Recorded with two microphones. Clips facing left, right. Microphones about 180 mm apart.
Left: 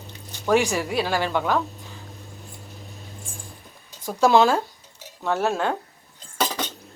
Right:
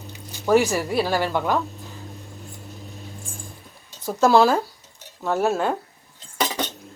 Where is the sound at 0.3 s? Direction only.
10° right (ahead or behind).